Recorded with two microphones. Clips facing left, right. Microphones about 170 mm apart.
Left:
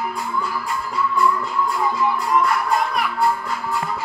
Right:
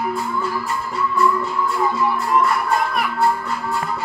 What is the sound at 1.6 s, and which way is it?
Music, centre (ahead or behind).